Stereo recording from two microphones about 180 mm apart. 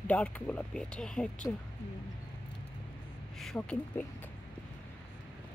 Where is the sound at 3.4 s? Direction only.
5° left (ahead or behind).